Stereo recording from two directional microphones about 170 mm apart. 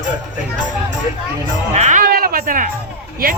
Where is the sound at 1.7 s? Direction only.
45° right (ahead or behind).